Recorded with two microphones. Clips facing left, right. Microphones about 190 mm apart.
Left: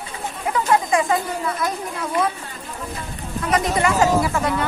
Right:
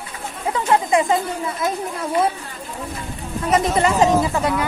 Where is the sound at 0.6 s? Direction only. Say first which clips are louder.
Right 2 dB; 25° right (ahead or behind).